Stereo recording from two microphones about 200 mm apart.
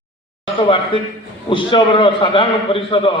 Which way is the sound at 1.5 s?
25° left (ahead or behind).